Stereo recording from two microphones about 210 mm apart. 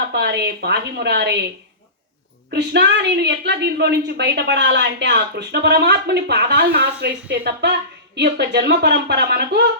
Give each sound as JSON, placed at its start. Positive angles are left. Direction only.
{"t": 0.1, "sound": "a woman's voice", "side_deg": -55}
{"t": 2.5, "sound": "a woman's voice", "side_deg": -50}